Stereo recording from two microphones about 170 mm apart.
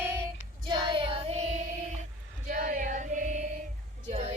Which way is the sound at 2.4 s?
55° right (ahead or behind).